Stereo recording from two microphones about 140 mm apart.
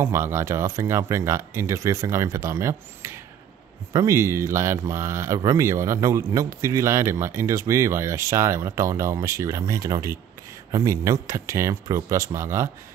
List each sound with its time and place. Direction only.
0.0 s speech: 20° right (ahead or behind)